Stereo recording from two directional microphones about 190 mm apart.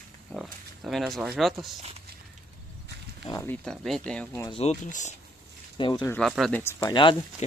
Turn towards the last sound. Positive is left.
turn(degrees=25)  # may be behind; listen again after turning